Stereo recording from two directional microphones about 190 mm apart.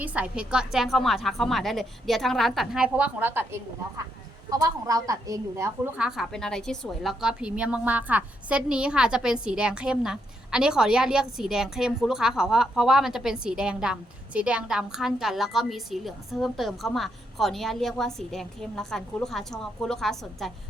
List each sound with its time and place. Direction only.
0.0 s a woman's voice: 5° right (ahead or behind)
6.0 s a woman's voice: centre (ahead or behind)